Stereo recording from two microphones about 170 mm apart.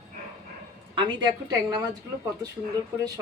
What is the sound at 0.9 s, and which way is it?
Speech, 30° right (ahead or behind).